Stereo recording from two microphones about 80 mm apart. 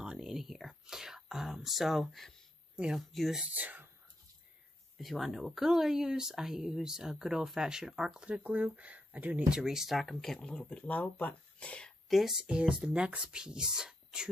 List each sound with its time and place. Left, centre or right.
0.0 s speech: centre
2.7 s speech: centre
3.0 s speech: centre
3.4 s speech: right
4.9 s speech: centre
8.4 s speech: centre
9.5 s speech: centre
10.5 s speech: centre
12.1 s speech: centre